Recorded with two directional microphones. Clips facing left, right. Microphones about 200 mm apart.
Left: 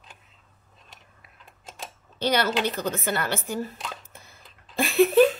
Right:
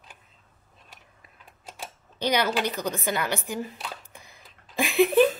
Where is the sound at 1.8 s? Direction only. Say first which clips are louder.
Left 1 dB; 15° right (ahead or behind).